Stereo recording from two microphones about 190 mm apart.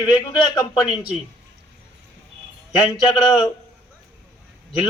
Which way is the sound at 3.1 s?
5° right (ahead or behind).